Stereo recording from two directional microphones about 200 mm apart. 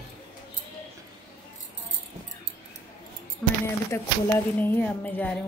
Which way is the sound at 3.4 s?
5° left (ahead or behind).